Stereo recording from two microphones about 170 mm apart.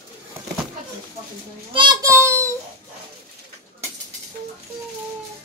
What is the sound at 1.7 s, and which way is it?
Child singing, 30° right (ahead or behind).